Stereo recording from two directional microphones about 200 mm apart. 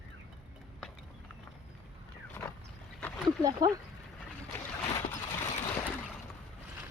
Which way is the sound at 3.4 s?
20° right (ahead or behind).